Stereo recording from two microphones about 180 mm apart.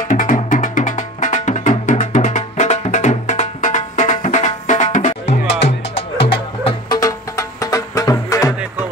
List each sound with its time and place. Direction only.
0.1 s music: 45° left (ahead or behind)
6.2 s music: 30° left (ahead or behind)